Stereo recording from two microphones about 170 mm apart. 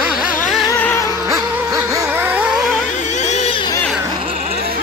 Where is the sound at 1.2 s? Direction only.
20° right (ahead or behind).